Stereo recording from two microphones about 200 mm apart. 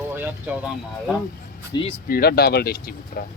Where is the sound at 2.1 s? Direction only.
50° left (ahead or behind).